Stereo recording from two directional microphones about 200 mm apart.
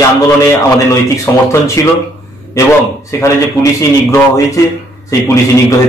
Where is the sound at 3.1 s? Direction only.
15° left (ahead or behind).